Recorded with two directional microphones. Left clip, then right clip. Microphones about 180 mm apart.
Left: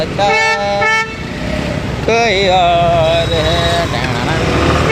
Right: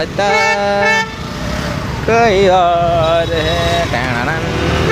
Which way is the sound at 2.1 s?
15° right (ahead or behind).